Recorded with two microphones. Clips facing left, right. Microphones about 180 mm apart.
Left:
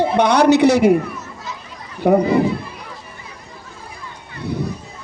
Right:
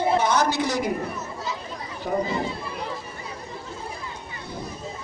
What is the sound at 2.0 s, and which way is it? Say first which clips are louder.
Speech: left 12 dB; 75° left (ahead or behind).